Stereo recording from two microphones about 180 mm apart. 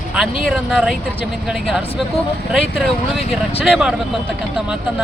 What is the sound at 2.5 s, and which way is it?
Speech, centre (ahead or behind).